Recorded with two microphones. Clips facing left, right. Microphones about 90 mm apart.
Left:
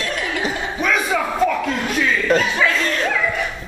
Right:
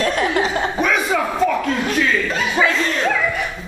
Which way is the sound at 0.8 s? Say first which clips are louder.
Left 3 dB; centre (ahead or behind).